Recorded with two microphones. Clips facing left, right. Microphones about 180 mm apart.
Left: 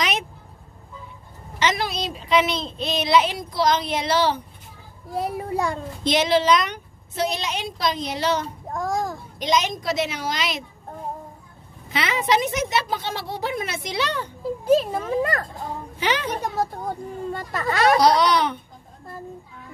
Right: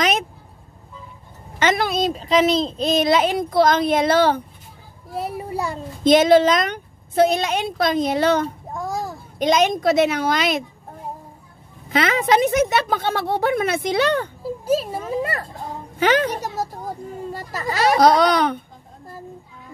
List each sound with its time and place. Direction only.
1.6 s speech: 55° right (ahead or behind)
5.1 s a child's voice: 5° right (ahead or behind)
6.0 s speech: 50° right (ahead or behind)
8.7 s a sound: centre (ahead or behind)
9.4 s speech: 55° right (ahead or behind)
11.9 s speech: 50° right (ahead or behind)
14.6 s speech: 5° right (ahead or behind)
16.0 s speech: 50° right (ahead or behind)
17.3 s a child's voice: 5° right (ahead or behind)
17.9 s speech: 50° right (ahead or behind)